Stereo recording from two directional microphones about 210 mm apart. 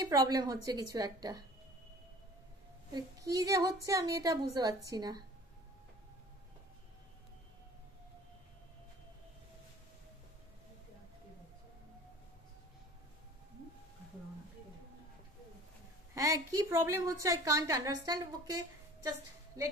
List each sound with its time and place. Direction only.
0.0 s a woman's voice: 15° right (ahead or behind)
2.9 s a woman's voice: 20° right (ahead or behind)
16.2 s a woman's voice: 15° right (ahead or behind)